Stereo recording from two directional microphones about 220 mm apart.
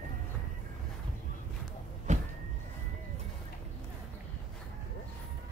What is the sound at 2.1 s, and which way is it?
Vehicle, 35° right (ahead or behind).